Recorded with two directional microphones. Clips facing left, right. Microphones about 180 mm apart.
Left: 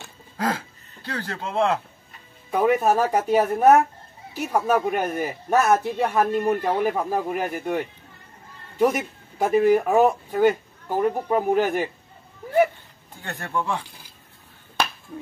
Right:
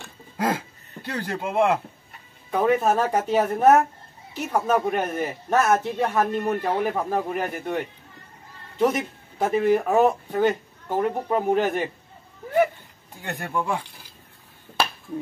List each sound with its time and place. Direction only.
0.4 s speech: 15° right (ahead or behind)
2.5 s speech: 5° left (ahead or behind)
13.2 s speech: 10° right (ahead or behind)